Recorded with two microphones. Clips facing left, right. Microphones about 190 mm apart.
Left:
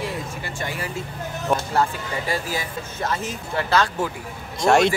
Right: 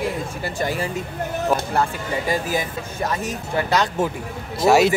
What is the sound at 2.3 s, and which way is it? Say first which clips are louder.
Speech: right 4 dB; 20° right (ahead or behind).